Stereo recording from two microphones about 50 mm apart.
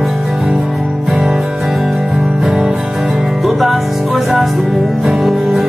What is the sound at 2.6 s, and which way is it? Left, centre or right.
Music, centre.